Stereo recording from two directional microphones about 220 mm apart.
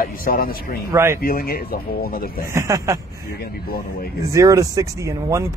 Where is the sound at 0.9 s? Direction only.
10° right (ahead or behind).